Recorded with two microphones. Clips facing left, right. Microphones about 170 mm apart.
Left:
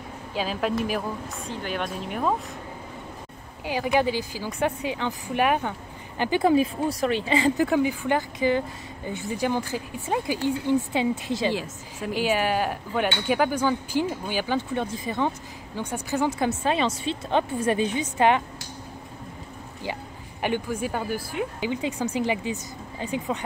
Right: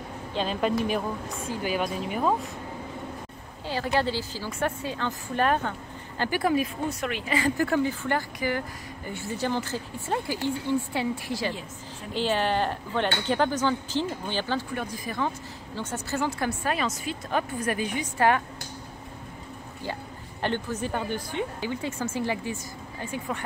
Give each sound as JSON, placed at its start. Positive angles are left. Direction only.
{"t": 0.3, "sound": "a woman's voice", "side_deg": 5}
{"t": 3.6, "sound": "a woman's voice", "side_deg": 15}
{"t": 12.1, "sound": "a woman's voice", "side_deg": 10}
{"t": 14.7, "sound": "a woman's voice", "side_deg": 25}
{"t": 20.4, "sound": "a woman's voice", "side_deg": 10}